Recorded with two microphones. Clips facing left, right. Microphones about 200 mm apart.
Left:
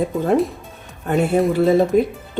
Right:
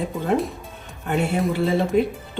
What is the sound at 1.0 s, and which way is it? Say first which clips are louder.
Speech: left 5 dB; 40° left (ahead or behind).